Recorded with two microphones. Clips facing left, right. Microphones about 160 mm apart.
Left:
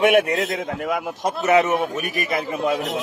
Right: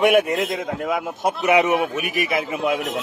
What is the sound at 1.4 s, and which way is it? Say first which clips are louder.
A man's voice: even; 15° right (ahead or behind).